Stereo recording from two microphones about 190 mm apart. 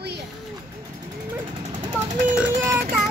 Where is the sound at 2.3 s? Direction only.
15° right (ahead or behind).